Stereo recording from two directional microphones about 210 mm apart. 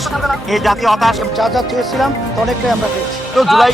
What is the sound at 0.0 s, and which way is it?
Speech, centre (ahead or behind).